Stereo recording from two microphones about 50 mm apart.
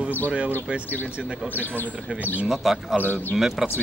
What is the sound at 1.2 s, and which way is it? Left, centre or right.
Speech, centre.